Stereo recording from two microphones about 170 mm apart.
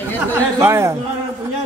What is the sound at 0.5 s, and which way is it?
Speech, 15° right (ahead or behind).